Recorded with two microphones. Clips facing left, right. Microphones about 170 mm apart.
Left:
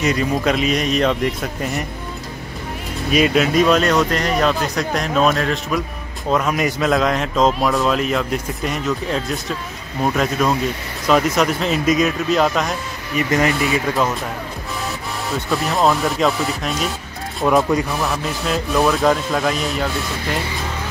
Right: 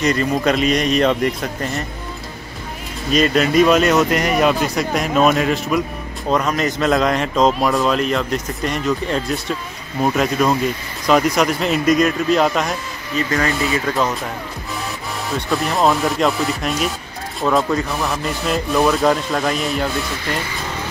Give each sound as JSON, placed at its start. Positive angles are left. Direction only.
{"t": 0.0, "sound": "a man's voice", "side_deg": 5}
{"t": 3.1, "sound": "a man's voice", "side_deg": 5}
{"t": 6.3, "sound": "a man's voice", "side_deg": 5}
{"t": 13.1, "sound": "speech", "side_deg": 15}
{"t": 15.3, "sound": "a man's voice", "side_deg": 0}